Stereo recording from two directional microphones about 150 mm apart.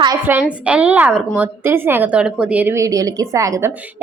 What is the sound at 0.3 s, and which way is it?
A woman's voice, 10° right (ahead or behind).